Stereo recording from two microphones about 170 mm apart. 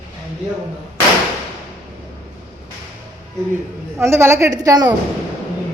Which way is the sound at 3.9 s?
15° right (ahead or behind).